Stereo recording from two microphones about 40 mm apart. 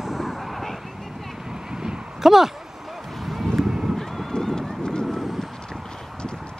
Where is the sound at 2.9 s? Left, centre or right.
Centre.